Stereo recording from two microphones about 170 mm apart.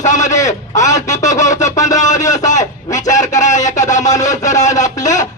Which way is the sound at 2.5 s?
45° left (ahead or behind).